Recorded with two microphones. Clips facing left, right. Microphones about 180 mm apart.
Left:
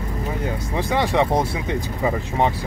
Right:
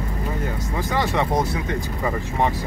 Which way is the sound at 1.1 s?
20° left (ahead or behind).